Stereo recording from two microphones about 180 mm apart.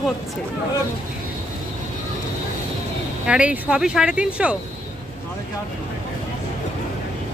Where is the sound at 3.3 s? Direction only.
5° right (ahead or behind).